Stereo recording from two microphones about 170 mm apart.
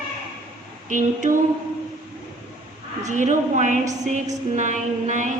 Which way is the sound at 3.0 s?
45° right (ahead or behind).